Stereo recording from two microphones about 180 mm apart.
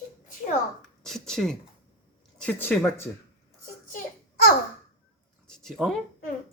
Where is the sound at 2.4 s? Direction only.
10° left (ahead or behind).